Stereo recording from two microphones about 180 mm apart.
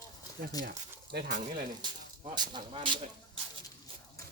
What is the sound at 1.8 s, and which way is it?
Speech, 25° right (ahead or behind).